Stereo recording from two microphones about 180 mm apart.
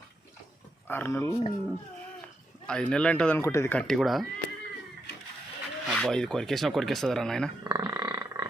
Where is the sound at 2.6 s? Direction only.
5° left (ahead or behind).